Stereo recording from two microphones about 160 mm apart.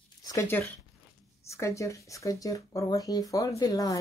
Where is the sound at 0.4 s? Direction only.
10° left (ahead or behind).